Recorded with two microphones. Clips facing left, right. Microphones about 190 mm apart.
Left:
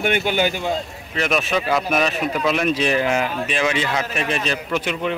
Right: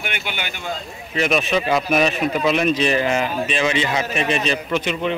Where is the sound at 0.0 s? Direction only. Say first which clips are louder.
Left 10 dB; 40° left (ahead or behind).